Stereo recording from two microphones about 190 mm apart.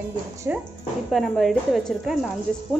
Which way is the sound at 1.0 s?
Centre (ahead or behind).